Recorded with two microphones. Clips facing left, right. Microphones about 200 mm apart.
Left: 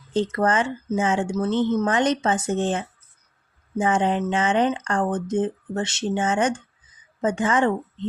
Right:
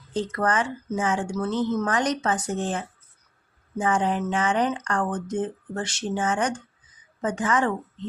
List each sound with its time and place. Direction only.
0.1 s speech: 25° left (ahead or behind)